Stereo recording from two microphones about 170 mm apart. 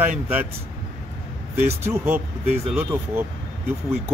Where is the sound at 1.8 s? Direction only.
15° right (ahead or behind).